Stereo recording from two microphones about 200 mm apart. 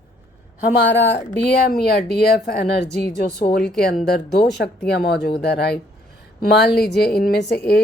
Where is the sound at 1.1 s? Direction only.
50° left (ahead or behind).